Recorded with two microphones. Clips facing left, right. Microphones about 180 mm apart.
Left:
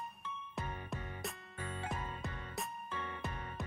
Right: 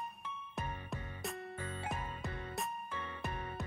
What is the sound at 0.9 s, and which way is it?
Music, centre (ahead or behind).